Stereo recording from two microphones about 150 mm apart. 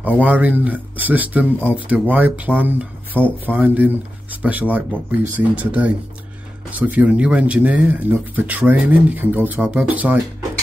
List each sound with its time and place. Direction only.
0.0 s speech: 10° right (ahead or behind)